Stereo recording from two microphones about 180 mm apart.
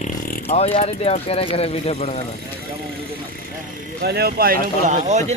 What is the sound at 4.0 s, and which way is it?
Speech, 60° right (ahead or behind).